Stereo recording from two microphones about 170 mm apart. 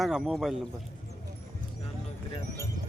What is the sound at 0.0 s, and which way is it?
Speech, centre (ahead or behind).